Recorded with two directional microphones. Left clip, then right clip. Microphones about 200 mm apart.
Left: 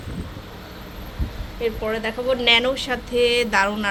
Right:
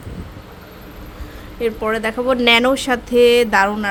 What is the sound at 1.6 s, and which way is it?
Speech, 35° right (ahead or behind).